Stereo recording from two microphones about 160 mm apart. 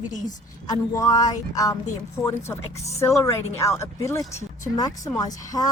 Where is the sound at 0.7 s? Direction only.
20° left (ahead or behind).